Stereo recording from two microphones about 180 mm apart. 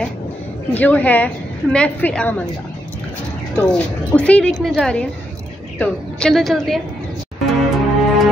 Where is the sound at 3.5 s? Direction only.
10° left (ahead or behind).